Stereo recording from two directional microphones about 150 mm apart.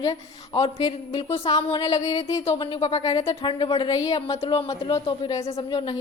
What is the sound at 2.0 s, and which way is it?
Speech, 25° left (ahead or behind).